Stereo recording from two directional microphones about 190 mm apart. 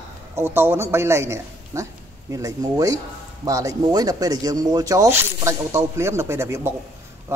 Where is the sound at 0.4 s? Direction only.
10° right (ahead or behind).